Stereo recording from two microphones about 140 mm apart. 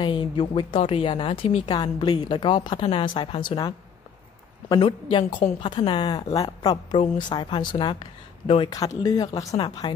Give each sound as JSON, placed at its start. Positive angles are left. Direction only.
{"t": 0.0, "sound": "a woman's voice", "side_deg": 35}
{"t": 8.6, "sound": "a woman's voice", "side_deg": 25}